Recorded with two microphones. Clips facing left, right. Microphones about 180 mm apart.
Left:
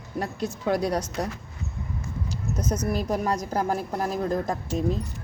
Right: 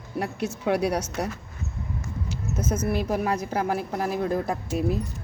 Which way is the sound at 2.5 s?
55° left (ahead or behind).